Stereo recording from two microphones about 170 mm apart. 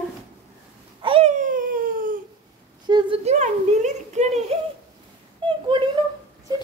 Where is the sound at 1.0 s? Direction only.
35° right (ahead or behind); by 2.2 s 55° right (ahead or behind).